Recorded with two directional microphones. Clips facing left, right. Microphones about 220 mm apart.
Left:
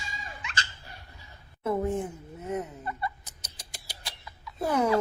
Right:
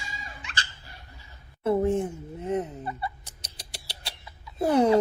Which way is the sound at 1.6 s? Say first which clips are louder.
Right 5 dB; 30° right (ahead or behind).